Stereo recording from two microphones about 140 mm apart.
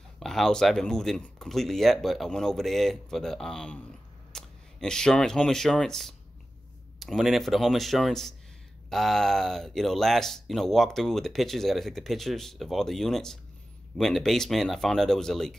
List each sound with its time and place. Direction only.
0.2 s speech: 5° left (ahead or behind)